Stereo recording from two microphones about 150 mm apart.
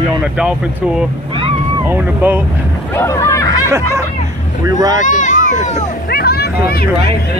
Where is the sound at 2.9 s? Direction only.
20° left (ahead or behind).